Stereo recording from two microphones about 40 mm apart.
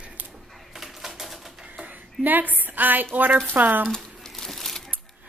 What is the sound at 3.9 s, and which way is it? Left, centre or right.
Crumpling, centre.